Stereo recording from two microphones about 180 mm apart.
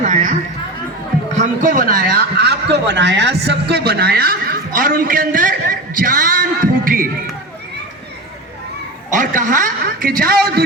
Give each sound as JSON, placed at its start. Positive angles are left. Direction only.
{"t": 0.0, "sound": "chatter", "side_deg": -45}
{"t": 1.6, "sound": "a man's voice", "side_deg": -50}
{"t": 9.1, "sound": "a woman's voice", "side_deg": -45}